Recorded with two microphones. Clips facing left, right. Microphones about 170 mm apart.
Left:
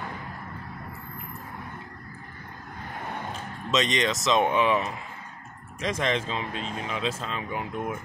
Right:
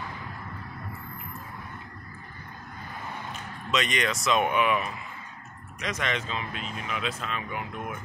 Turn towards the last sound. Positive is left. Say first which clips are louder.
# left 2 dB
turn(degrees=30)  # may be behind; listen again after turning